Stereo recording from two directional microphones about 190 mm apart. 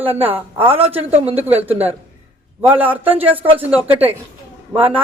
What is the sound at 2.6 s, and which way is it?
A man's voice, 10° right (ahead or behind).